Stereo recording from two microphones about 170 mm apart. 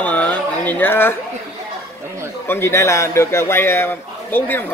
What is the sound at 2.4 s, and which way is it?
A man's voice, 15° left (ahead or behind).